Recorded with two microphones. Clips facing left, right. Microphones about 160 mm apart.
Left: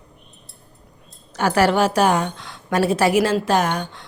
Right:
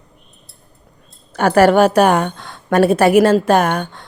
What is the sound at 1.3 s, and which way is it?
A woman's voice, 55° right (ahead or behind).